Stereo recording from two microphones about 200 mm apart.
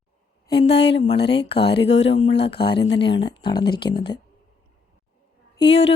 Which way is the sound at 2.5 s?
55° left (ahead or behind).